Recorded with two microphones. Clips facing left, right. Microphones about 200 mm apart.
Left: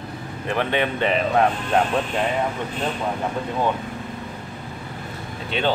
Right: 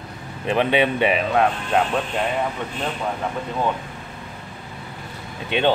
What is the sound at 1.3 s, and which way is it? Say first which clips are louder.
Speech: even; centre (ahead or behind).